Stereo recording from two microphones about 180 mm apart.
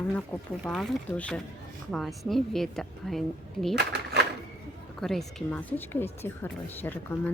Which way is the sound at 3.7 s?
65° right (ahead or behind).